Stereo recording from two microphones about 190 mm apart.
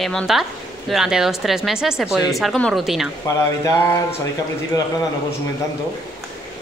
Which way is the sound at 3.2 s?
15° left (ahead or behind).